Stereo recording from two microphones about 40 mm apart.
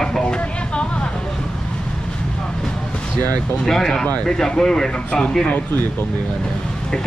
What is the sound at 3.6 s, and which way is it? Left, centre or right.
Speech, centre.